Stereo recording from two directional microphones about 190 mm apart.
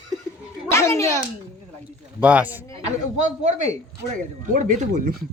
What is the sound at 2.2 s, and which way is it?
Speech, 10° right (ahead or behind).